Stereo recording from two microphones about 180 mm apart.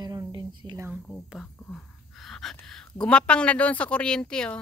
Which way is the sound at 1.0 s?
Centre (ahead or behind).